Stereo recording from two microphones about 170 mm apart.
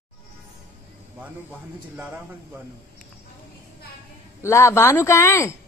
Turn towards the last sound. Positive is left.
turn(degrees=15)  # may be behind; listen again after turning